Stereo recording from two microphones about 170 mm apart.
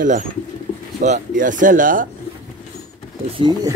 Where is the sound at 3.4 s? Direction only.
25° right (ahead or behind).